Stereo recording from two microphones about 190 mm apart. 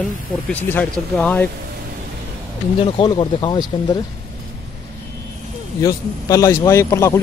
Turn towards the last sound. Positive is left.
turn(degrees=15)  # may be behind; listen again after turning